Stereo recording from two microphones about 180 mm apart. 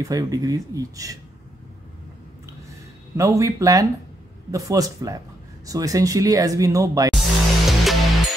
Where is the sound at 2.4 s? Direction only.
15° right (ahead or behind).